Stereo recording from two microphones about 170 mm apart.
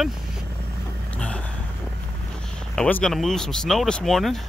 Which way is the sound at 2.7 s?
5° left (ahead or behind).